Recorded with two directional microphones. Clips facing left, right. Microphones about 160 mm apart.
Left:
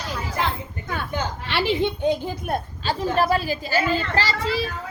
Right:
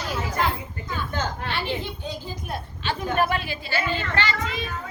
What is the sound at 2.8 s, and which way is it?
A woman's voice, 35° left (ahead or behind).